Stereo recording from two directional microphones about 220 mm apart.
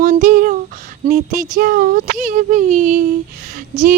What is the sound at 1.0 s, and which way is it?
Speech, 40° right (ahead or behind).